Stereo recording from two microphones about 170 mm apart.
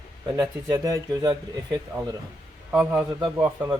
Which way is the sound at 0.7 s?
20° right (ahead or behind).